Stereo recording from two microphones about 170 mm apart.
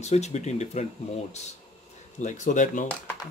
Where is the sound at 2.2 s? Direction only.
45° left (ahead or behind).